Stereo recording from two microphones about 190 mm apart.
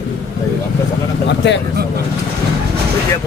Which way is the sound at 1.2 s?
65° left (ahead or behind).